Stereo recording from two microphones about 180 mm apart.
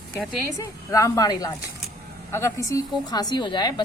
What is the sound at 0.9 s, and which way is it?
A woman's voice, 15° left (ahead or behind).